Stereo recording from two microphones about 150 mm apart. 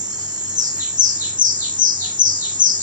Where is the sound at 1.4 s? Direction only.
65° right (ahead or behind).